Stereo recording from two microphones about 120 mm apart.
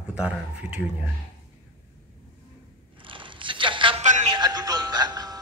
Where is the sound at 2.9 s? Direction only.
45° right (ahead or behind).